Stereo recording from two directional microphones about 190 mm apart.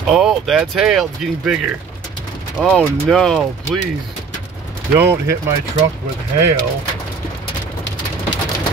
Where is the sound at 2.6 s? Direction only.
5° left (ahead or behind).